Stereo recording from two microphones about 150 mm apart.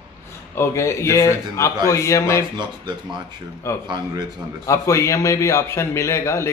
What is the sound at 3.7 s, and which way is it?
A man's voice, 20° left (ahead or behind).